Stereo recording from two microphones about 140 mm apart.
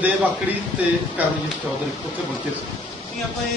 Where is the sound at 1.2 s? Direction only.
10° right (ahead or behind).